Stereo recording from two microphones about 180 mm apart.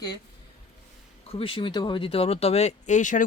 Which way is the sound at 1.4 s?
30° left (ahead or behind).